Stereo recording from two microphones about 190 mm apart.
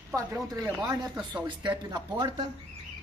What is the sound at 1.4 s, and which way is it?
Speech, 25° right (ahead or behind).